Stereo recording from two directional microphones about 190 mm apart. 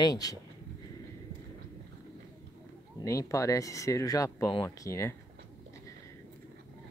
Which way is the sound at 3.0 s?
15° left (ahead or behind).